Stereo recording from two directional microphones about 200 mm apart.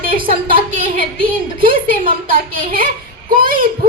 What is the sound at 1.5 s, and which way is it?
Speech, 45° right (ahead or behind).